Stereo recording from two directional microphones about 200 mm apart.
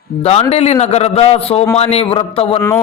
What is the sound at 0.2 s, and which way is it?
A man's voice, 30° left (ahead or behind).